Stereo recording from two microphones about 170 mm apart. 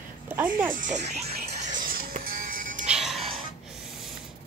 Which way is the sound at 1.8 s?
60° right (ahead or behind).